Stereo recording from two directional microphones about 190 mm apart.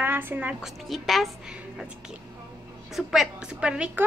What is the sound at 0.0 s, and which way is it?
A woman's voice, 10° right (ahead or behind).